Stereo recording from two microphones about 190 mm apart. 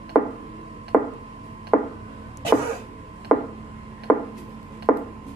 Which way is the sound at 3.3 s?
5° left (ahead or behind).